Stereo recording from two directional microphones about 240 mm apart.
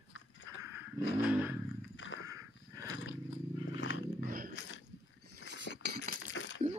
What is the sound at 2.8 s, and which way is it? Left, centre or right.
Wild animals, left.